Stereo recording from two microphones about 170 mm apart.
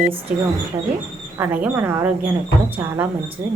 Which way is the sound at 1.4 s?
10° right (ahead or behind).